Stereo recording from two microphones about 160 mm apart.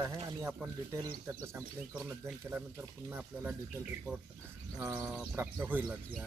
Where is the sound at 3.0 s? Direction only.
10° right (ahead or behind).